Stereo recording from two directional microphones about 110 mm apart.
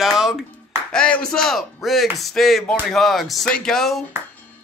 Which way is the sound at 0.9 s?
10° left (ahead or behind).